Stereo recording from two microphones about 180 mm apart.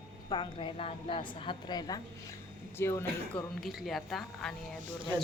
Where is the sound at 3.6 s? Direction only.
Centre (ahead or behind).